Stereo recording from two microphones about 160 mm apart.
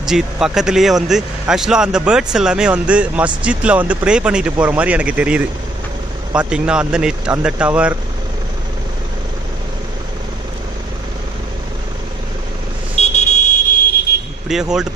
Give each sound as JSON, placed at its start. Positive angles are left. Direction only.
{"t": 0.0, "sound": "speech", "side_deg": -5}
{"t": 12.9, "sound": "vehicle", "side_deg": 45}
{"t": 14.5, "sound": "speech", "side_deg": -5}